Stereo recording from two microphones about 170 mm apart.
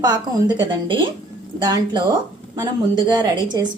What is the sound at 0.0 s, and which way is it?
Speech, 25° right (ahead or behind).